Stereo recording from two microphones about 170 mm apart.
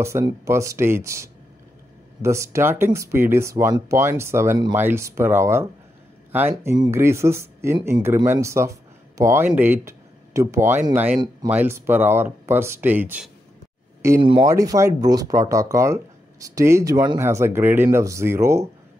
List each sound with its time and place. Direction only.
0.0 s speech: 15° right (ahead or behind)
14.2 s speech: 30° right (ahead or behind)
14.5 s speech: 20° right (ahead or behind)